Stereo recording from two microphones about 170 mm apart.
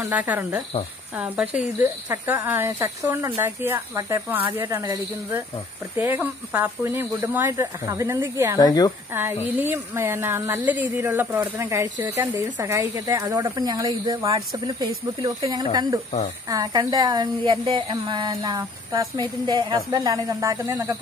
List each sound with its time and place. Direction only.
0.0 s speech: 10° right (ahead or behind)
8.5 s speech: 25° left (ahead or behind)
9.6 s a woman's voice: 15° right (ahead or behind)